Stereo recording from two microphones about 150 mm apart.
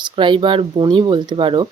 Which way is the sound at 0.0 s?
30° right (ahead or behind).